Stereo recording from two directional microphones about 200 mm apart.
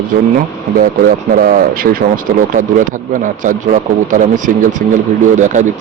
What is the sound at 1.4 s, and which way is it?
Speech, 45° right (ahead or behind).